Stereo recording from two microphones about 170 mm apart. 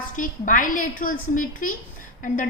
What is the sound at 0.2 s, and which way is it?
A woman's voice, 50° left (ahead or behind).